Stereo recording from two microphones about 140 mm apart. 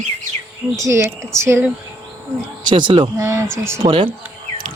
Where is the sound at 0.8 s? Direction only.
15° right (ahead or behind).